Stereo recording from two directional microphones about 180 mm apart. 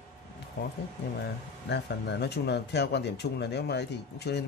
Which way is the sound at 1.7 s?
65° left (ahead or behind).